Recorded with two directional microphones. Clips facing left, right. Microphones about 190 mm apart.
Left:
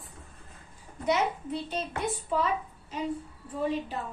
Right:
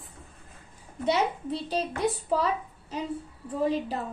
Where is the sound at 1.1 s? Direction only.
35° right (ahead or behind).